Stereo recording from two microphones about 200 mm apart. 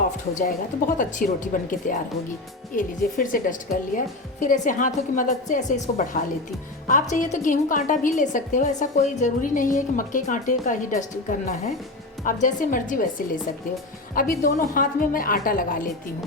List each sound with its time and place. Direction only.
0.3 s a woman's voice: 40° left (ahead or behind)
2.7 s a woman's voice: 45° left (ahead or behind)